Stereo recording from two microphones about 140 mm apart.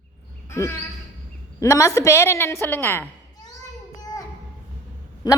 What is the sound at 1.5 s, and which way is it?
A woman's voice, 20° left (ahead or behind).